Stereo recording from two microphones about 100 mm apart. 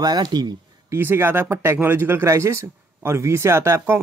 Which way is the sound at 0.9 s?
25° right (ahead or behind).